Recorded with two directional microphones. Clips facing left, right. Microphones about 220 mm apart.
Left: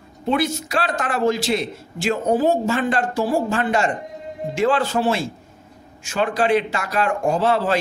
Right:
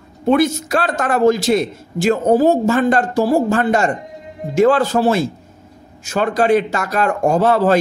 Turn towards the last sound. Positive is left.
turn(degrees=-45)  # may be behind; listen again after turning